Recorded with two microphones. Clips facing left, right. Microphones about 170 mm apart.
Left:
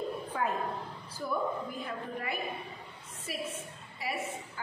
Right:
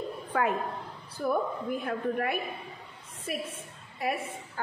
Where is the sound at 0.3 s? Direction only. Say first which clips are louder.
Right 6 dB; 70° right (ahead or behind).